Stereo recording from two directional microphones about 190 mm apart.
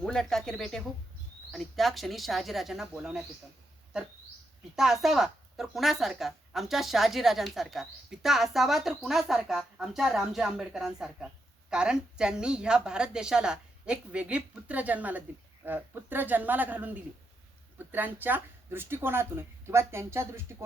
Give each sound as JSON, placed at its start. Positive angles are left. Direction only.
{"t": 0.0, "sound": "a woman's voice", "side_deg": 5}
{"t": 4.8, "sound": "a woman's voice", "side_deg": 0}